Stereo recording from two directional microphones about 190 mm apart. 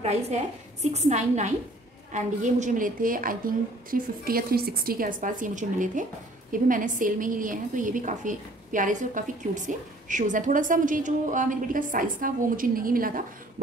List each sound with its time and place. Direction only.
0.9 s a woman's voice: 35° right (ahead or behind)